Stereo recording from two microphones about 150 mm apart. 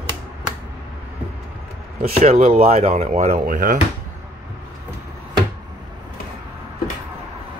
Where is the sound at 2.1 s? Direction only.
45° right (ahead or behind).